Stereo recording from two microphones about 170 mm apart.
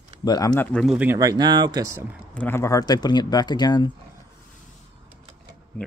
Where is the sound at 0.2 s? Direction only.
25° left (ahead or behind).